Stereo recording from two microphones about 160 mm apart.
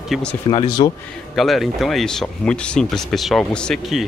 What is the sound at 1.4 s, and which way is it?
Speech, centre (ahead or behind).